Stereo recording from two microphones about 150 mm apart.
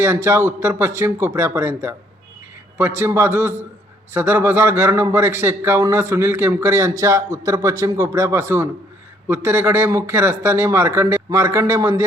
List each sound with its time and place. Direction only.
0.0 s a man's voice: 15° right (ahead or behind)